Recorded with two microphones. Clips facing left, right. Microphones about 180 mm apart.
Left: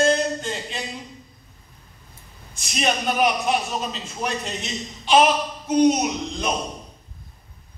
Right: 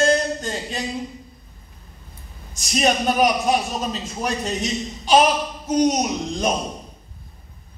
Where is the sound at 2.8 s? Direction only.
40° right (ahead or behind).